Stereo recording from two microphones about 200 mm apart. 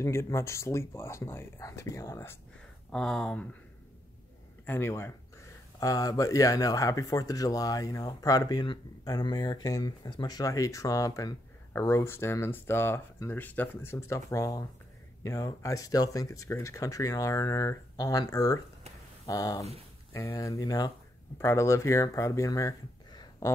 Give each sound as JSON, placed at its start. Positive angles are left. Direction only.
{"t": 0.0, "sound": "speech", "side_deg": 15}
{"t": 2.9, "sound": "speech", "side_deg": 5}
{"t": 4.6, "sound": "speech", "side_deg": 10}